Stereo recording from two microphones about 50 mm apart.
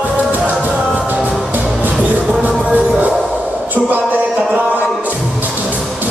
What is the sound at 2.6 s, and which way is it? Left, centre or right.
Music, right.